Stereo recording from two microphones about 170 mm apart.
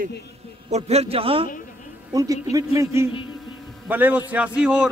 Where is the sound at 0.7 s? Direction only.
40° right (ahead or behind).